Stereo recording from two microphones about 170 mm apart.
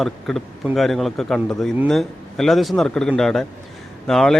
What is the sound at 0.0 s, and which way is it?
Speech, centre (ahead or behind).